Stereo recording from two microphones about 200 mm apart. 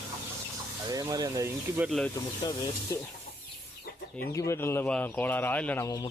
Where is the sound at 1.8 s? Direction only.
Centre (ahead or behind).